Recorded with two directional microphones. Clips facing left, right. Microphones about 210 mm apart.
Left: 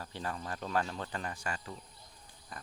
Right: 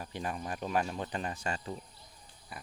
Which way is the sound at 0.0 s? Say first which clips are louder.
Right 2 dB; 15° right (ahead or behind).